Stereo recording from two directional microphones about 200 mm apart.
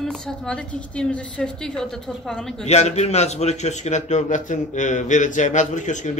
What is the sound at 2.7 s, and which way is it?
A man's voice, 35° left (ahead or behind).